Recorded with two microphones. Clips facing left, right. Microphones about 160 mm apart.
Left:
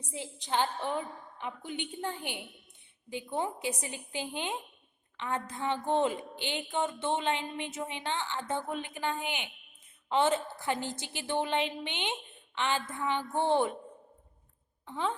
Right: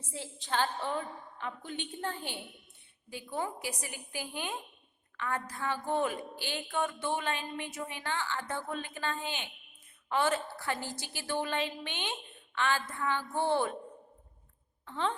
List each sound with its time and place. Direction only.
0.0 s a woman's voice: 15° left (ahead or behind)
14.8 s speech: 10° left (ahead or behind)